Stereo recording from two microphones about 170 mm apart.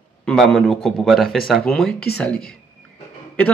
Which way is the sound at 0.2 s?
5° left (ahead or behind).